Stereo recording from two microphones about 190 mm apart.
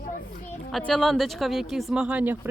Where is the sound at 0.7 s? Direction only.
5° left (ahead or behind).